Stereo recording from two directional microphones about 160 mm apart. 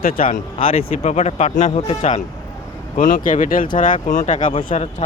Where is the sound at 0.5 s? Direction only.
35° left (ahead or behind).